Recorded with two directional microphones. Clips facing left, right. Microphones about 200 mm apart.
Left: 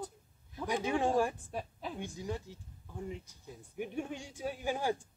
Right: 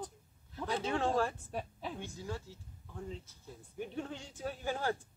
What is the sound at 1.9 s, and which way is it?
Speech, 15° left (ahead or behind).